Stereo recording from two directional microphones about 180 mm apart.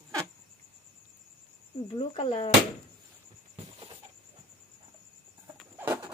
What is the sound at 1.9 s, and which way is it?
Speech, 30° left (ahead or behind).